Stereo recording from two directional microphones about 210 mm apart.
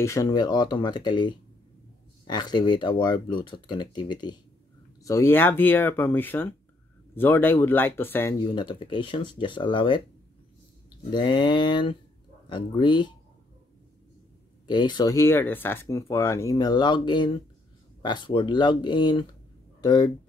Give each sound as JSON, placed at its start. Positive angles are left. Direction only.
{"t": 0.0, "sound": "speech", "side_deg": 15}
{"t": 11.1, "sound": "speech", "side_deg": 20}
{"t": 14.7, "sound": "speech", "side_deg": 20}